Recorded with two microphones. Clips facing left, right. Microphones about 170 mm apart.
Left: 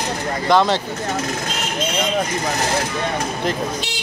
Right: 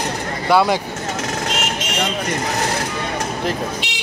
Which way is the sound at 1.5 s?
85° right.